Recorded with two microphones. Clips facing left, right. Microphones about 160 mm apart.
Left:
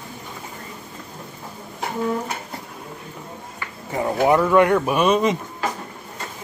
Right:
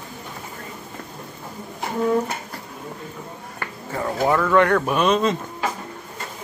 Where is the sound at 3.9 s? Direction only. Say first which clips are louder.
Left 3 dB; 15° left (ahead or behind).